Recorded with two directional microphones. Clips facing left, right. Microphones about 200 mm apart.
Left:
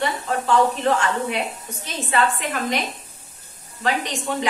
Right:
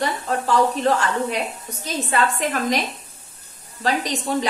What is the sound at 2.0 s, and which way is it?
Speech, 40° right (ahead or behind).